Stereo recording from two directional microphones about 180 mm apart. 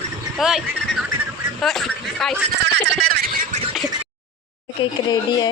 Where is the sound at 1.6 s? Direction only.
Centre (ahead or behind).